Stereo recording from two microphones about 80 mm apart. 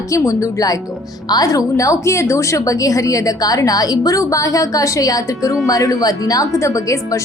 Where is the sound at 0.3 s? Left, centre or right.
Left.